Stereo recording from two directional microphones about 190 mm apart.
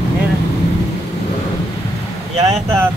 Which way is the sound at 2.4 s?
20° right (ahead or behind).